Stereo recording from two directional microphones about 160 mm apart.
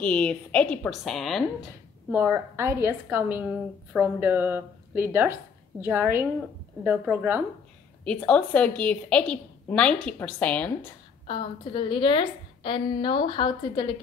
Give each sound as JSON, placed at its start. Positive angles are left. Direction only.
{"t": 0.0, "sound": "a woman's voice", "side_deg": 5}
{"t": 2.1, "sound": "a woman's voice", "side_deg": -15}
{"t": 8.0, "sound": "a woman's voice", "side_deg": 5}
{"t": 11.2, "sound": "a woman's voice", "side_deg": 30}